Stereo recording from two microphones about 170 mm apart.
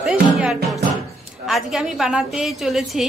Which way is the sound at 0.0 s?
5° right (ahead or behind).